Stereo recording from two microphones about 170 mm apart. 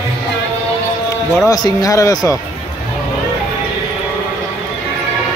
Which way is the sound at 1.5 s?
20° left (ahead or behind).